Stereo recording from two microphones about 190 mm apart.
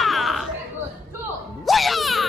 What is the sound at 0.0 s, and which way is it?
Chatter, centre (ahead or behind).